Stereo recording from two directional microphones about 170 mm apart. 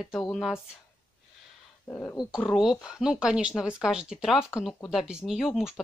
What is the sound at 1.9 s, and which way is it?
Speech, 15° left (ahead or behind).